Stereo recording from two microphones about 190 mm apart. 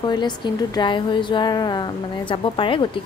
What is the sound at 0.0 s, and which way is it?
A woman's voice, 25° left (ahead or behind).